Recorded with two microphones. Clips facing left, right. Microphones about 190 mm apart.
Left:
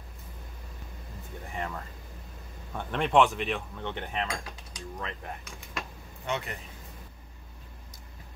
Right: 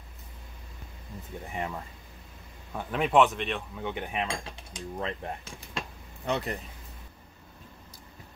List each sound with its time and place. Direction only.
1.5 s speech: 15° right (ahead or behind)
2.7 s speech: 5° right (ahead or behind)
4.3 s mechanisms: 25° right (ahead or behind)